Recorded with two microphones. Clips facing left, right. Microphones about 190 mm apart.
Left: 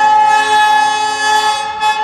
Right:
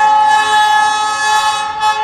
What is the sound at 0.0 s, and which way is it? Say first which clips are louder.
Train: even; 15° left (ahead or behind).